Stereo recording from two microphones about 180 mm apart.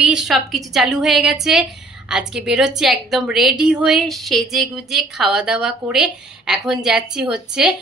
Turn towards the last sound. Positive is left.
turn(degrees=-5)  # may be behind; listen again after turning